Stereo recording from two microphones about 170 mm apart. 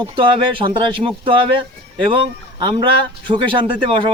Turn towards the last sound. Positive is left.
turn(degrees=-30)  # may be behind; listen again after turning